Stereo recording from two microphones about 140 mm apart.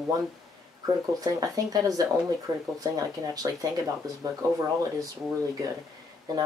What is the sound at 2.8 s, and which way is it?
Speech, 25° right (ahead or behind).